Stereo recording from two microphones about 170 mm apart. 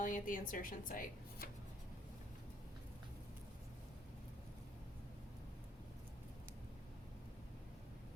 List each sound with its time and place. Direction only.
0.0 s a woman's voice: 50° left (ahead or behind)